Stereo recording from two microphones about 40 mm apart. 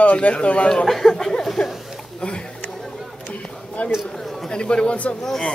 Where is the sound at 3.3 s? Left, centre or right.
Left.